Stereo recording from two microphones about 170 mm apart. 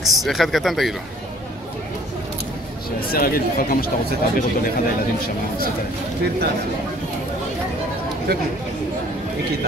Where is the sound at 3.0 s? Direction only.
60° left (ahead or behind).